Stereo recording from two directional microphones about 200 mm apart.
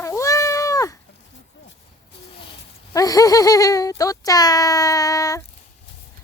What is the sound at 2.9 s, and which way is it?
Speech, 20° left (ahead or behind).